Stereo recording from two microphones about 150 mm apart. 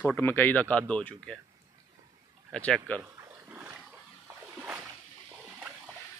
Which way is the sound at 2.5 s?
5° left (ahead or behind).